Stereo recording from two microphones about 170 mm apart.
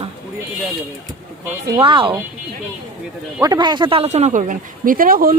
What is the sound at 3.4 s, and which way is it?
Speech, 25° right (ahead or behind).